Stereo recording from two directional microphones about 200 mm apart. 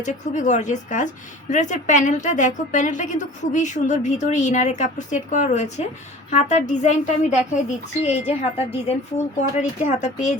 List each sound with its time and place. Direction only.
0.0 s a woman's voice: 40° left (ahead or behind)